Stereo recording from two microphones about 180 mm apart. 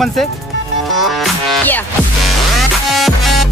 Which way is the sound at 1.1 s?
5° left (ahead or behind).